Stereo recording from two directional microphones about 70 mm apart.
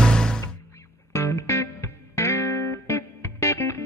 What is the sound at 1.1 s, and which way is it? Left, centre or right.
Music, left.